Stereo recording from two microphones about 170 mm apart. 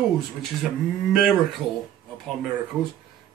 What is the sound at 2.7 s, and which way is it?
Speech, 5° right (ahead or behind).